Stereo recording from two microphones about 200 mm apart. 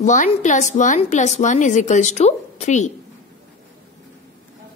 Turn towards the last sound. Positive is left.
turn(degrees=35)  # may be behind; listen again after turning